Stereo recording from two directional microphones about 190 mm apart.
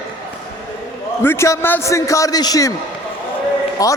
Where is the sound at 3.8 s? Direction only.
20° left (ahead or behind).